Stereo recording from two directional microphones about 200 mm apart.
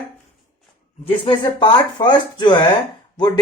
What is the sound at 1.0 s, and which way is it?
Speech, 25° left (ahead or behind).